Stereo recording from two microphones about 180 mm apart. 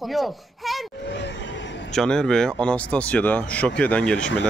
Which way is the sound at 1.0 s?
75° left (ahead or behind).